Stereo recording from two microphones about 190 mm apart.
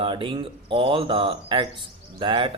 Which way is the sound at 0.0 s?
25° right (ahead or behind).